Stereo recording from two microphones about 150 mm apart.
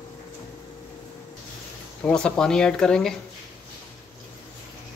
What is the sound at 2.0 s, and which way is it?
Speech, 5° left (ahead or behind).